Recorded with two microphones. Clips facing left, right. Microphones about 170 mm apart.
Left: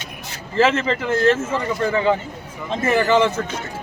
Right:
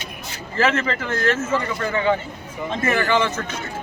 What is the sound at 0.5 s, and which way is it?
A man's voice, 25° left (ahead or behind).